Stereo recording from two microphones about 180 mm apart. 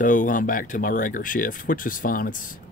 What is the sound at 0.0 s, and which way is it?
Speech, 45° left (ahead or behind).